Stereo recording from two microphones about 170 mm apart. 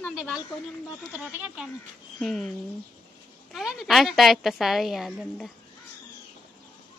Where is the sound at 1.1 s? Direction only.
5° right (ahead or behind).